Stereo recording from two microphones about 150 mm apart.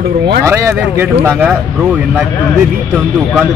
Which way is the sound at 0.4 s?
15° right (ahead or behind).